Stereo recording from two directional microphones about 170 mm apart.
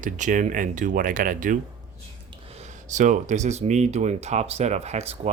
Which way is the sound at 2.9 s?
45° right (ahead or behind).